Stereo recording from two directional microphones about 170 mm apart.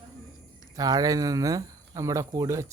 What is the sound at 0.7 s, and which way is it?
Speech, 20° right (ahead or behind).